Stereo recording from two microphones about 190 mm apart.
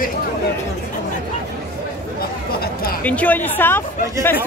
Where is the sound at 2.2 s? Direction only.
50° left (ahead or behind).